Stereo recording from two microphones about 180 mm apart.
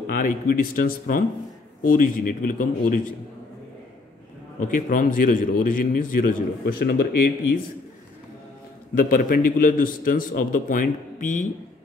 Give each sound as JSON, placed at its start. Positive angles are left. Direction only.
{"t": 0.0, "sound": "a man's voice", "side_deg": 50}
{"t": 4.6, "sound": "a man's voice", "side_deg": 45}
{"t": 8.9, "sound": "a man's voice", "side_deg": 50}